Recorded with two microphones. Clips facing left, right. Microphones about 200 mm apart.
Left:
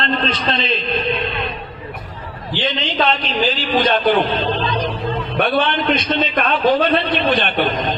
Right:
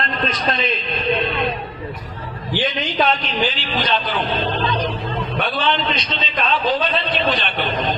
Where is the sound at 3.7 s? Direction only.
50° left (ahead or behind).